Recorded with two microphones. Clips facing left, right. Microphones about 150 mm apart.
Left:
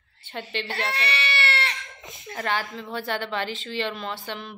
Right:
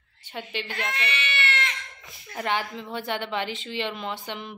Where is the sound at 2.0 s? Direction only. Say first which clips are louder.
Left 7 dB; 20° left (ahead or behind).